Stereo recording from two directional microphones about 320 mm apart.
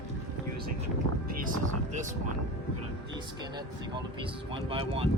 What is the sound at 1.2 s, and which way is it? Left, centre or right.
Speech, right.